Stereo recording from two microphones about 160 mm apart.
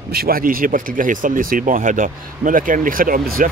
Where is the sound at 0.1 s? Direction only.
70° right (ahead or behind).